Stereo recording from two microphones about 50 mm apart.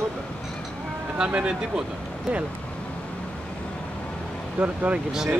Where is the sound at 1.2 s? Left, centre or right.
Centre.